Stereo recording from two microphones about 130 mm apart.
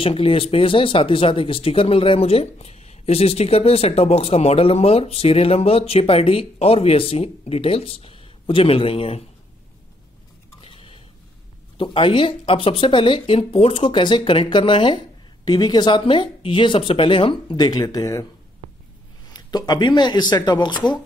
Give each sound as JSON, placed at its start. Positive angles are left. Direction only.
{"t": 0.0, "sound": "speech", "side_deg": 45}
{"t": 10.6, "sound": "a sound", "side_deg": 45}
{"t": 11.8, "sound": "speech", "side_deg": 40}
{"t": 19.3, "sound": "speech", "side_deg": 30}